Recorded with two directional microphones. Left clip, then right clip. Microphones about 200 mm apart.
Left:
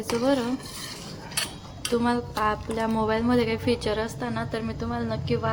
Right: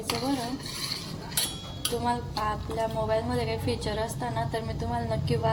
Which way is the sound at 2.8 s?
30° left (ahead or behind).